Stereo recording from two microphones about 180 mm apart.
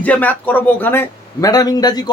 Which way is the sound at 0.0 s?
10° left (ahead or behind).